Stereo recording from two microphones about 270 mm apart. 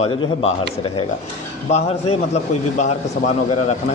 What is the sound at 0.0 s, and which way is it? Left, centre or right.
A man's voice, left.